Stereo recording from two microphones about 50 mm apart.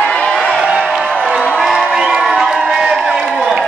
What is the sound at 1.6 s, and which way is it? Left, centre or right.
Crowd, centre.